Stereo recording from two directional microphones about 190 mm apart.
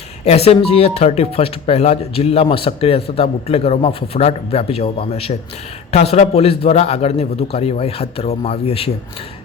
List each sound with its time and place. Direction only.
0.3 s speech: 30° left (ahead or behind)